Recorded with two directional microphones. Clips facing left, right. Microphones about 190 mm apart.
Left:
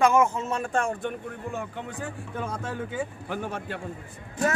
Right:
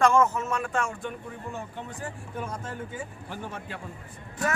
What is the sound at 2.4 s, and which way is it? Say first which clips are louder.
A man's voice: left 4 dB; 75° left (ahead or behind).